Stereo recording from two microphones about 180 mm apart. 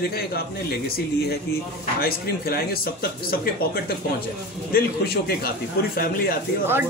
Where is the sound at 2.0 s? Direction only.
55° left (ahead or behind).